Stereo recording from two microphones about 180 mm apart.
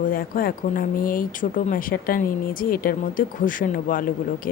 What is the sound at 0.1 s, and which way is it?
Speech, 50° left (ahead or behind).